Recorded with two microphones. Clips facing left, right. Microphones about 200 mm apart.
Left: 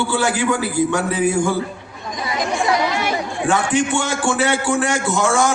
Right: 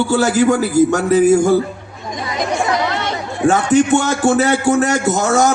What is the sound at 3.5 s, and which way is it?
A man's voice, 45° right (ahead or behind).